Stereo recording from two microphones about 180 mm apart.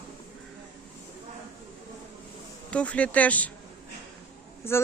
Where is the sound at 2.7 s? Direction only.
5° left (ahead or behind).